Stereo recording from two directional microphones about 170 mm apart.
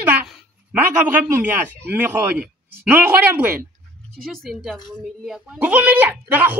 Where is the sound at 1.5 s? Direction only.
10° right (ahead or behind).